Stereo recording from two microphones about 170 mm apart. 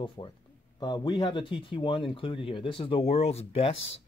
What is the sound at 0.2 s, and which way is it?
Speech, 30° left (ahead or behind).